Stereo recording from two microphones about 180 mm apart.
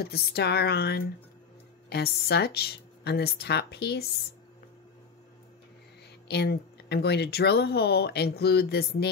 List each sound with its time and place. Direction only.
0.0 s speech: 60° left (ahead or behind)
6.2 s speech: 65° left (ahead or behind)